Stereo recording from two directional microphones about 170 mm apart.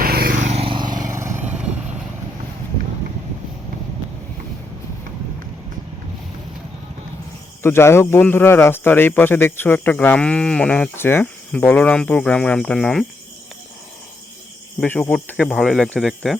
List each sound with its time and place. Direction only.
0.0 s vehicle: 65° right (ahead or behind)
0.4 s vehicle: 35° right (ahead or behind); by 1.7 s 10° right (ahead or behind)
7.6 s speech: 15° left (ahead or behind)
14.8 s speech: 5° left (ahead or behind)